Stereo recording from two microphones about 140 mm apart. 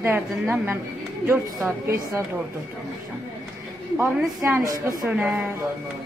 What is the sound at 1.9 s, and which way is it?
Speech, 20° right (ahead or behind).